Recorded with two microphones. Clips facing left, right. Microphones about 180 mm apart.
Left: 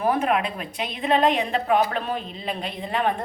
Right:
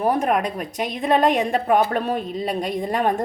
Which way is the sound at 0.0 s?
40° right (ahead or behind).